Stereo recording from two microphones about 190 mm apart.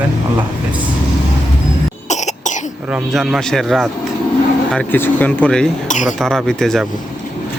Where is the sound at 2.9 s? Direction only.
Centre (ahead or behind).